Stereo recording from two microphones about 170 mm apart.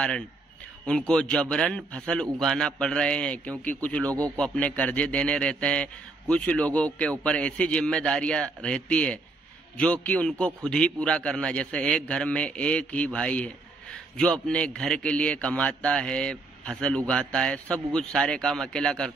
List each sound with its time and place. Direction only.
0.8 s a man's voice: 5° left (ahead or behind)